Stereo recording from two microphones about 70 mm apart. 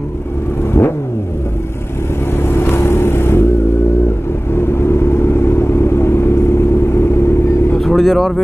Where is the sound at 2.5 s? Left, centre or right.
Left.